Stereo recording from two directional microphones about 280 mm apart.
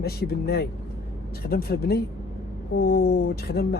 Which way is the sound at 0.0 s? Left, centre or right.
Left.